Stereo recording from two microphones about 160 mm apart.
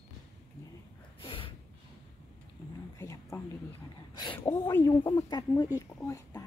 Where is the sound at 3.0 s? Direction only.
20° left (ahead or behind).